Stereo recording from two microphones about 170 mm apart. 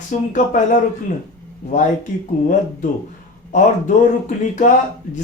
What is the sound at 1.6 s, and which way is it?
Speech, 50° left (ahead or behind).